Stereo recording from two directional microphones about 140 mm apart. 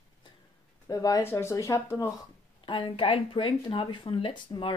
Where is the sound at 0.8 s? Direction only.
25° left (ahead or behind).